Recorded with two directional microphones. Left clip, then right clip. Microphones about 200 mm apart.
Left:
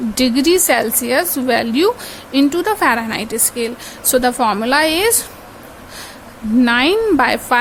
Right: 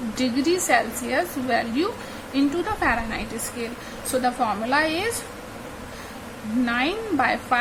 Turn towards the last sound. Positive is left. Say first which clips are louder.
# left 8 dB
turn(degrees=60)  # may be behind; listen again after turning